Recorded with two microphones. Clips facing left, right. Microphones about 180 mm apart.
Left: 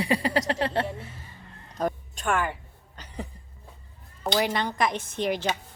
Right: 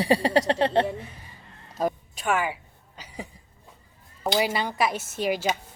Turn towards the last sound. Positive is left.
turn(degrees=-10)  # may be behind; listen again after turning